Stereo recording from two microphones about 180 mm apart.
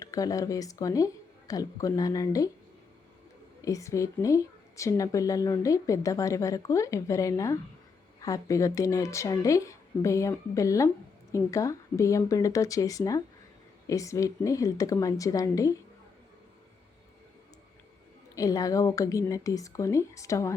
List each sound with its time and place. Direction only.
0.0 s speech: 20° left (ahead or behind)
3.6 s a woman's voice: 20° left (ahead or behind)
18.3 s a woman's voice: 20° left (ahead or behind)